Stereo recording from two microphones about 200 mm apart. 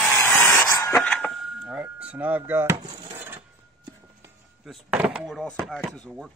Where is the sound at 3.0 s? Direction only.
25° right (ahead or behind).